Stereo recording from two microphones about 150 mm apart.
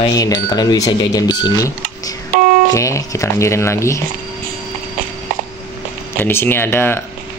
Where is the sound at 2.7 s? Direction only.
20° left (ahead or behind).